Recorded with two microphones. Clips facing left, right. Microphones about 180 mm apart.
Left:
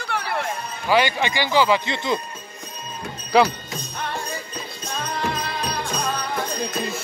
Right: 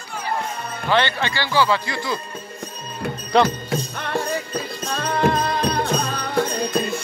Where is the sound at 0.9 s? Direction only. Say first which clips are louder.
Left 1 dB; 10° left (ahead or behind).